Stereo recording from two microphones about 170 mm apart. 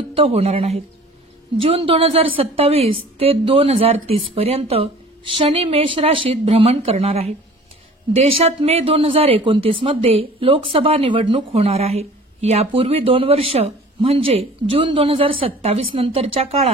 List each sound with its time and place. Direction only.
0.1 s speech: 35° right (ahead or behind)